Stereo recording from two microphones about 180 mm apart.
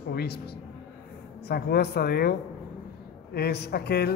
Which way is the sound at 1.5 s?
60° left (ahead or behind).